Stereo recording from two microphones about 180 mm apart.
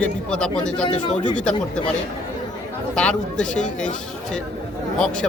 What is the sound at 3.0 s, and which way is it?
Speech, 5° left (ahead or behind).